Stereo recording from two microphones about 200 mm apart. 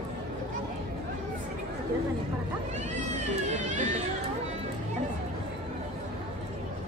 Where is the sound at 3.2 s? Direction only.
35° right (ahead or behind).